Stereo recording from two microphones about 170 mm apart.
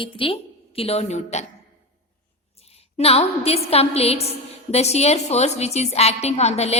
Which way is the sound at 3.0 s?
35° left (ahead or behind).